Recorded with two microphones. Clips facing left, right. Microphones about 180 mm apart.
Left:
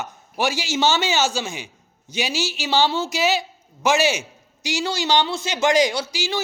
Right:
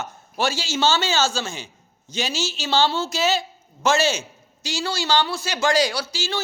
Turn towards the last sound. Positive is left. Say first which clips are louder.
# left 2 dB
turn(degrees=15)  # may be behind; listen again after turning